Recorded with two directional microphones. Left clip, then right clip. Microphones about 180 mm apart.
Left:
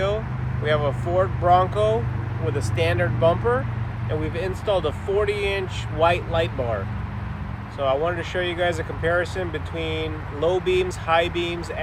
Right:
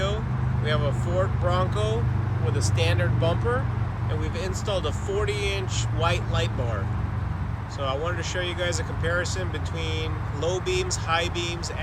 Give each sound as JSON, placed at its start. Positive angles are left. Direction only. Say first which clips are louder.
{"t": 0.6, "sound": "speech", "louder": "left 6 dB", "side_deg": 30}
{"t": 7.8, "sound": "speech", "louder": "left 6 dB", "side_deg": 30}